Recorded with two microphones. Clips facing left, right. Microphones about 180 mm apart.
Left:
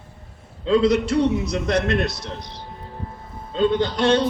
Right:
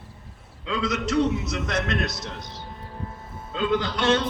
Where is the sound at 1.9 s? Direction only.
Centre (ahead or behind).